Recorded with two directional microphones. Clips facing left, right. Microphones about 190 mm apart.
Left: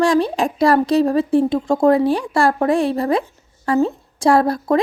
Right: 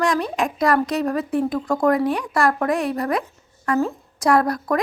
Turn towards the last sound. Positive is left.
turn(degrees=30)  # may be behind; listen again after turning